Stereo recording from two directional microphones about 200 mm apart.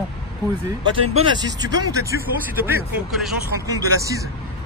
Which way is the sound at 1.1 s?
20° right (ahead or behind).